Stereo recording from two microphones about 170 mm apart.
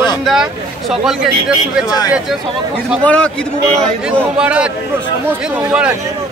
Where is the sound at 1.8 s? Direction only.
20° left (ahead or behind).